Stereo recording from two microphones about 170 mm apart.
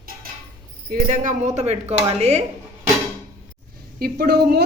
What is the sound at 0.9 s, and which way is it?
Speech, 50° right (ahead or behind).